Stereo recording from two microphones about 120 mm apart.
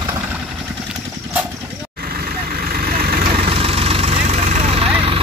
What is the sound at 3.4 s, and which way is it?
Vehicle, 55° right (ahead or behind).